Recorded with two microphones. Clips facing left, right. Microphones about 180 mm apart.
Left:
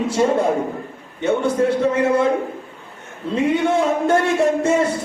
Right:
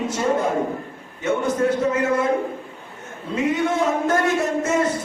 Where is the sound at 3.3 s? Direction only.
30° left (ahead or behind).